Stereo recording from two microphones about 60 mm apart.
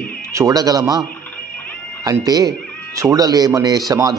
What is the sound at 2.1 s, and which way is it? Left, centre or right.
A man's voice, right.